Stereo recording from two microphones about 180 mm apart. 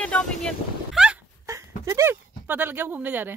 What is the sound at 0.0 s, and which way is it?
Vehicle, 5° left (ahead or behind).